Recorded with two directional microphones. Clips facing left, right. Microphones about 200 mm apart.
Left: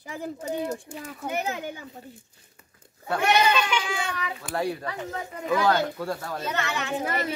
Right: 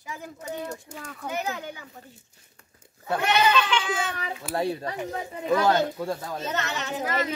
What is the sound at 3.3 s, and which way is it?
Speech, 10° left (ahead or behind).